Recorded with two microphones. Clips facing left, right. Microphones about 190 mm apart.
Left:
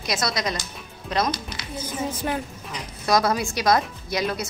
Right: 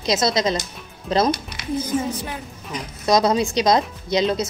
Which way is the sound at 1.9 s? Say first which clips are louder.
Right 5 dB; centre (ahead or behind).